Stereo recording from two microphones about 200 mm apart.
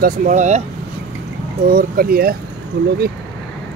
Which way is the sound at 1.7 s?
45° right (ahead or behind).